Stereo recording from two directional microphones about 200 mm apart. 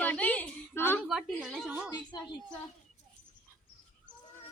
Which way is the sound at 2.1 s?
20° left (ahead or behind).